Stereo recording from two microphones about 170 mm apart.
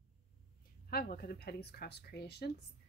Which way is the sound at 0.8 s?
60° left (ahead or behind).